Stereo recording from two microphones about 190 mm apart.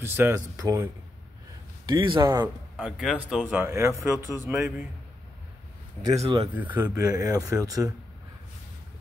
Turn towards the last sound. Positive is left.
turn(degrees=-20)  # may be behind; listen again after turning